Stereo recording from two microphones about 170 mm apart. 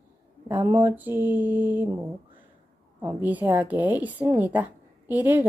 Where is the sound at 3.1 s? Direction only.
10° right (ahead or behind).